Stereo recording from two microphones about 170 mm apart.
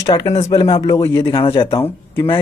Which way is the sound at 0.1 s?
35° left (ahead or behind).